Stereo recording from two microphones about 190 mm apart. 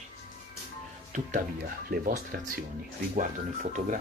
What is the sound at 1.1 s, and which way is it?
Speech, 40° right (ahead or behind).